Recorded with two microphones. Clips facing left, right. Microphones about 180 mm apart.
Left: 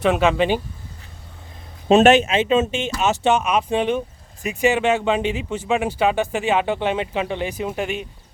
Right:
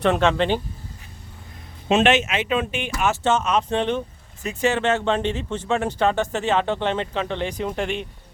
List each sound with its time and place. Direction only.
0.0 s speech: 5° left (ahead or behind)
1.9 s speech: 40° left (ahead or behind); by 8.0 s 5° left (ahead or behind)